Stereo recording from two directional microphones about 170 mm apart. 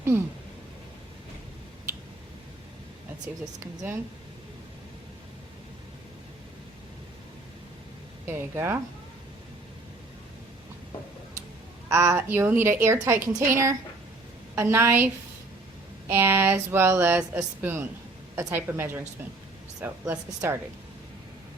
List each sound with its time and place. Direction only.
3.4 s a woman's voice: 15° right (ahead or behind)
8.3 s a woman's voice: 15° right (ahead or behind)
11.9 s a woman's voice: 15° right (ahead or behind)